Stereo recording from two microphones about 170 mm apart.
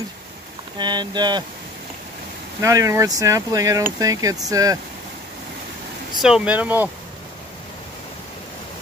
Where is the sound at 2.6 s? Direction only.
20° right (ahead or behind).